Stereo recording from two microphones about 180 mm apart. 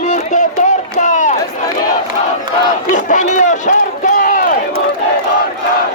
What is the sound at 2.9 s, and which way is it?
Run, 45° left (ahead or behind).